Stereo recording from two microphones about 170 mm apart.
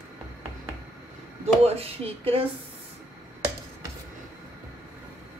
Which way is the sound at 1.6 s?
35° right (ahead or behind).